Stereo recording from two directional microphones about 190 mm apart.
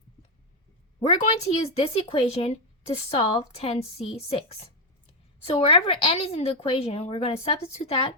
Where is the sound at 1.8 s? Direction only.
30° left (ahead or behind).